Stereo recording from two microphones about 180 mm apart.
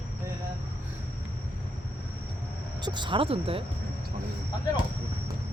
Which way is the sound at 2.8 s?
25° right (ahead or behind).